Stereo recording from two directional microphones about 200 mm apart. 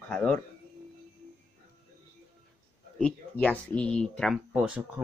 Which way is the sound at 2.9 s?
5° left (ahead or behind).